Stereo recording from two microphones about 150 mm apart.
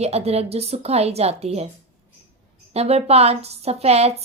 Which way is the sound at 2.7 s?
45° right (ahead or behind).